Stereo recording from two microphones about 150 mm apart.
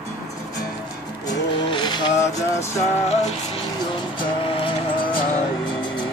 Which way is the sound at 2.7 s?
45° left (ahead or behind).